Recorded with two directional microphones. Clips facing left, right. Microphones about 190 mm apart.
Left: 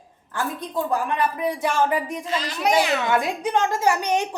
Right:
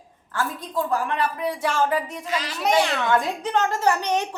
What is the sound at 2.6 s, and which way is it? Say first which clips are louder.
A woman's voice: left 1 dB; centre (ahead or behind).